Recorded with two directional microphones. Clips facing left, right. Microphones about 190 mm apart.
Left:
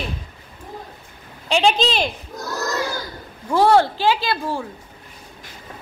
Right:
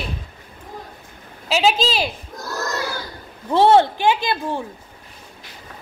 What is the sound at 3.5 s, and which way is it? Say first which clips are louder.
Speech: right 1 dB; 25° right (ahead or behind).